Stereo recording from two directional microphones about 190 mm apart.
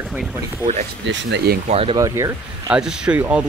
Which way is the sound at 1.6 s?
30° right (ahead or behind).